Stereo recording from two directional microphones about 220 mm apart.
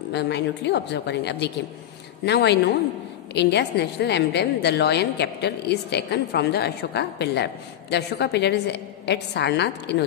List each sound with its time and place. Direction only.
0.1 s a woman's voice: 50° left (ahead or behind)